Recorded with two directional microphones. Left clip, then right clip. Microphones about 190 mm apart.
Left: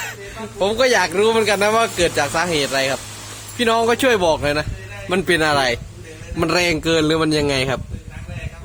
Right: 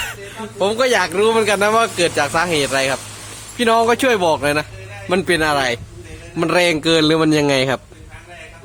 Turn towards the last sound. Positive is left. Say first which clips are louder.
# right 3 dB
turn(degrees=-10)  # may be behind; listen again after turning